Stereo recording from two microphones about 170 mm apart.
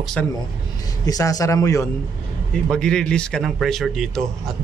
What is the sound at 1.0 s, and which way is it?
Speech, 20° left (ahead or behind).